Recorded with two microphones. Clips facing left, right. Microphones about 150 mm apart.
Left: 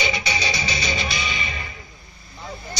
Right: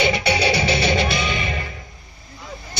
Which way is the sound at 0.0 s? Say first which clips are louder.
Right 7 dB; 65° right (ahead or behind).